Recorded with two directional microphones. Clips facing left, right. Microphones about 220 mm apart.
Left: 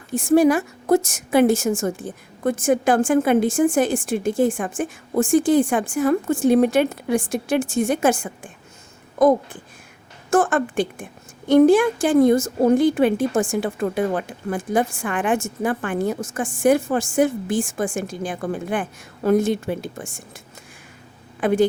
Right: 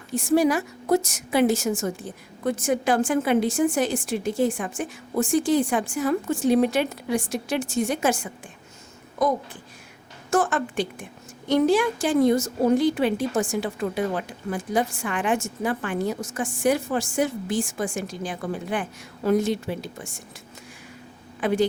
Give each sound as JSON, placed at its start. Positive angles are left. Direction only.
{"t": 0.1, "sound": "a woman's voice", "side_deg": 50}
{"t": 21.4, "sound": "a woman's voice", "side_deg": 50}